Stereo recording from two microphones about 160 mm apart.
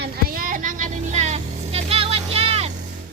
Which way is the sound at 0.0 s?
65° right (ahead or behind).